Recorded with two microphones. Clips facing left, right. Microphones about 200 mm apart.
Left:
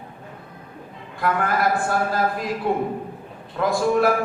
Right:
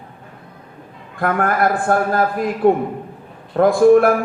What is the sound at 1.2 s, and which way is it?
A man's voice, 55° right (ahead or behind).